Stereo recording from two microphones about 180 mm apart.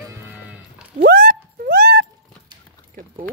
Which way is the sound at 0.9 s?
55° right (ahead or behind).